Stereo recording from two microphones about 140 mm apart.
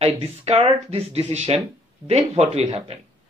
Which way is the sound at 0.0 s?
45° right (ahead or behind).